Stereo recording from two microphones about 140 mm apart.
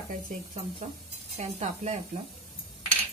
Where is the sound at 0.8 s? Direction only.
55° right (ahead or behind).